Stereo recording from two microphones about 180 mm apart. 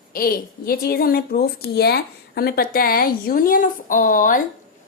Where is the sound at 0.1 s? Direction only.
55° left (ahead or behind).